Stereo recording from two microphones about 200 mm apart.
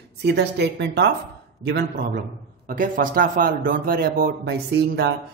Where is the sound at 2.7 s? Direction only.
40° right (ahead or behind).